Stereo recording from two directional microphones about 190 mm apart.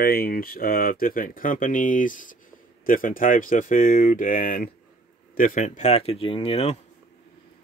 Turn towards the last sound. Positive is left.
turn(degrees=30)  # may be behind; listen again after turning